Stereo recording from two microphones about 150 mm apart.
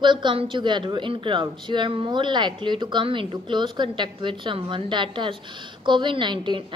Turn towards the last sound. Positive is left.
turn(degrees=-30)  # may be behind; listen again after turning